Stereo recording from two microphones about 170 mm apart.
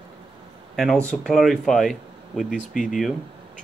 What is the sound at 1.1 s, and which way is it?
Speech, centre (ahead or behind).